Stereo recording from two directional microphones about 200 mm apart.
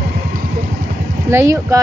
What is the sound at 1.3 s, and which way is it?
Speech, 15° right (ahead or behind).